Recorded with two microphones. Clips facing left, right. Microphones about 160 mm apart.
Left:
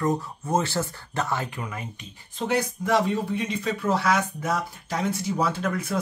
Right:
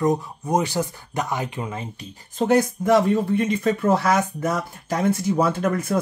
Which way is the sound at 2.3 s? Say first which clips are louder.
Right 7 dB; 45° right (ahead or behind).